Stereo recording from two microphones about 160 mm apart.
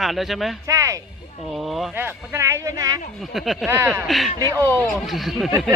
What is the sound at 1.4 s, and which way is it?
Speech, centre (ahead or behind).